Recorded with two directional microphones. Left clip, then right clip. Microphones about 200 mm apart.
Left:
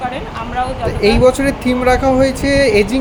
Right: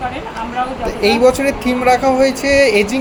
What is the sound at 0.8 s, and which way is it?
Speech, 30° left (ahead or behind).